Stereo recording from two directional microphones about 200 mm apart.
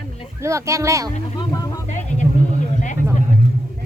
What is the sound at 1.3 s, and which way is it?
Speech, 20° left (ahead or behind).